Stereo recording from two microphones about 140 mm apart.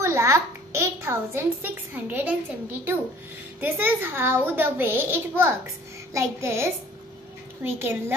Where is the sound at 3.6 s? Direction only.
15° right (ahead or behind).